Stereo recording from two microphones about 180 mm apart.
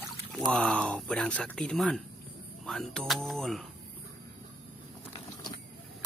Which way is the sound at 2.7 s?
5° left (ahead or behind).